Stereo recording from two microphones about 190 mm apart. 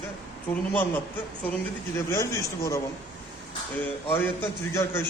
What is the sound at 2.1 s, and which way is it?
Speech, 15° left (ahead or behind).